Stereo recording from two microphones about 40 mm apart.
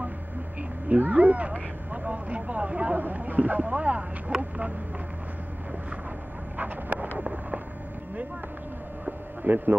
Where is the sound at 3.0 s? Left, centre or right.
Right.